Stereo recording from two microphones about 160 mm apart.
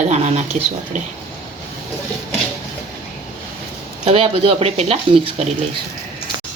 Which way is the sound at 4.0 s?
40° right (ahead or behind).